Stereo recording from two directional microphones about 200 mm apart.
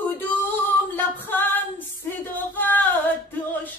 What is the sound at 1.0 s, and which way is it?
Singing, 10° left (ahead or behind).